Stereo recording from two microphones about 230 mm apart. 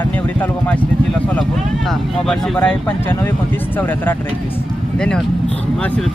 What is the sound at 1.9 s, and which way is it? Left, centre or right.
Speech, centre.